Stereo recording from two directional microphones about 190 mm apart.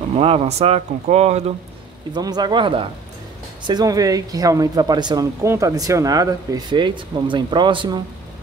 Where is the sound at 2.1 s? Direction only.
20° right (ahead or behind).